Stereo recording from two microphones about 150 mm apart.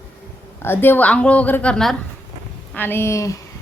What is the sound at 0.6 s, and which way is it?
A woman's voice, 15° left (ahead or behind).